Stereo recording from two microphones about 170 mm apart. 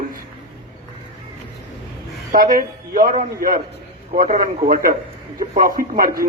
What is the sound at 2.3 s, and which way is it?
Speech, 55° right (ahead or behind).